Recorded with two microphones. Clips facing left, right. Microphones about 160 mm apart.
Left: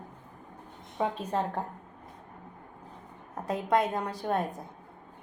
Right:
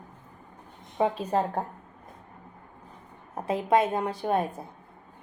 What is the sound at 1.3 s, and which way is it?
Speech, 30° right (ahead or behind).